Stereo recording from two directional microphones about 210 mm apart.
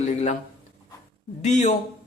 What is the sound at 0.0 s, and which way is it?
Speech, 35° left (ahead or behind).